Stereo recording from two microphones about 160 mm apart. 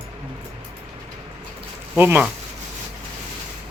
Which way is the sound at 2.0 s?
15° right (ahead or behind).